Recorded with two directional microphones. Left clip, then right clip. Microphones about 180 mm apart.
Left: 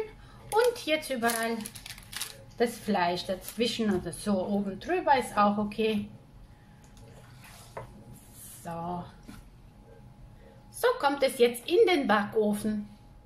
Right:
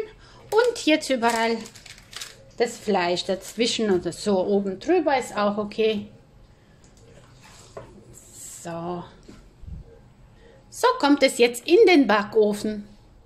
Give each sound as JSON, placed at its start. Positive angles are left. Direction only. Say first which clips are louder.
{"t": 0.7, "sound": "a woman's voice", "louder": "right 8 dB", "side_deg": -45}
{"t": 8.6, "sound": "a woman's voice", "louder": "right 4 dB", "side_deg": -40}
{"t": 10.8, "sound": "a woman's voice", "louder": "right 7 dB", "side_deg": -45}